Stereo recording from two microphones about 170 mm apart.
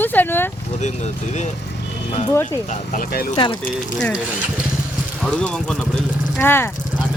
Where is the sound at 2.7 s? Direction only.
50° left (ahead or behind).